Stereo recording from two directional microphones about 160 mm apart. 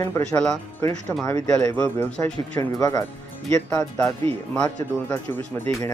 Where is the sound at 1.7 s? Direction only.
10° left (ahead or behind).